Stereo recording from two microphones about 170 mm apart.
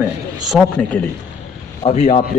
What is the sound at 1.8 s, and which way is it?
Speech, 40° left (ahead or behind).